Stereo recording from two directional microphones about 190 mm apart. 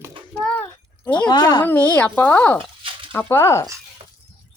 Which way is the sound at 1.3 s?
20° left (ahead or behind).